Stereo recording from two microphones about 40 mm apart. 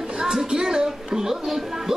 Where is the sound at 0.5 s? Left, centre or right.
Centre.